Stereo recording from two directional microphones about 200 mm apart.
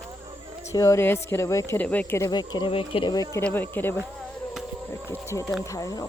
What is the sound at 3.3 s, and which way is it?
Speech, 10° left (ahead or behind).